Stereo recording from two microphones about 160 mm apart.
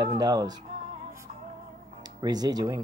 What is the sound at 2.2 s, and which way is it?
Speech, 25° right (ahead or behind).